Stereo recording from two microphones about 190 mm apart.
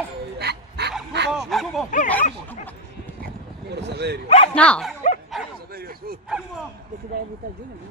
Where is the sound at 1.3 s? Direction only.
Centre (ahead or behind).